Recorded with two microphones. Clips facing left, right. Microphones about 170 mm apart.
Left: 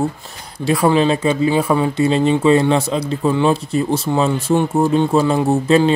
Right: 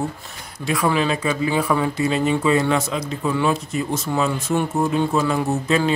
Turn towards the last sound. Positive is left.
turn(degrees=30)  # may be behind; listen again after turning